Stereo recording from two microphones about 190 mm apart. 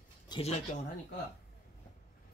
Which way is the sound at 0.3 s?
30° left (ahead or behind).